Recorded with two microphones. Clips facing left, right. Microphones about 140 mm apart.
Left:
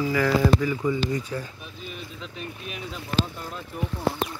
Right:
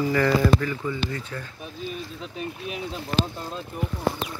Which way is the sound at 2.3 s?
30° right (ahead or behind).